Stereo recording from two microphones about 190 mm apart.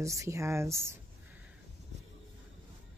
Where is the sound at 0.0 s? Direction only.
15° right (ahead or behind).